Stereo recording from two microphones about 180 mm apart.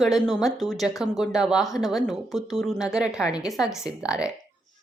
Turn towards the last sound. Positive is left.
turn(degrees=-5)  # may be behind; listen again after turning